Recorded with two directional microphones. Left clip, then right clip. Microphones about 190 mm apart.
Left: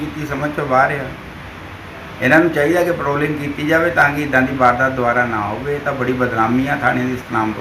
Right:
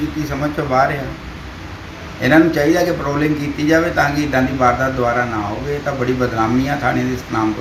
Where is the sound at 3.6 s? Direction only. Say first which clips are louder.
Left 1 dB; 5° right (ahead or behind).